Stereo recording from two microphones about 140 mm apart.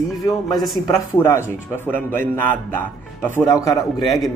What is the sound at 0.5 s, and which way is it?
Music, centre (ahead or behind).